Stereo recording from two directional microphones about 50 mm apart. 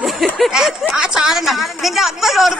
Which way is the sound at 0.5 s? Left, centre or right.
Centre.